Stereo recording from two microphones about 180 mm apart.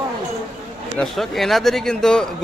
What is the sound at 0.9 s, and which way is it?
A man's voice, centre (ahead or behind).